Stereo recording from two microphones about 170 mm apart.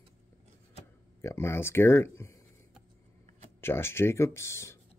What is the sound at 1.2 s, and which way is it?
Speech, 15° left (ahead or behind).